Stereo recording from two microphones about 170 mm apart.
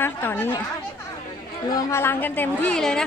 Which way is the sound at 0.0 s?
15° left (ahead or behind).